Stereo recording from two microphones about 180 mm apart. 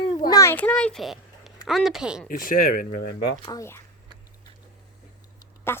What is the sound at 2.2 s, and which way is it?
Speech, 50° left (ahead or behind).